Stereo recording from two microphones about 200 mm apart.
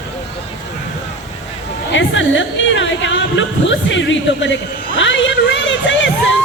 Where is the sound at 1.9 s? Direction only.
70° left (ahead or behind).